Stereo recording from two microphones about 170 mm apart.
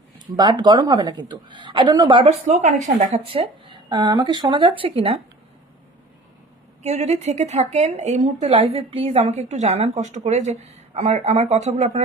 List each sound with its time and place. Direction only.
0.3 s a woman's voice: 25° right (ahead or behind)
2.6 s a woman's voice: 45° right (ahead or behind)
3.2 s a woman's voice: 30° right (ahead or behind)
6.8 s a woman's voice: 40° right (ahead or behind)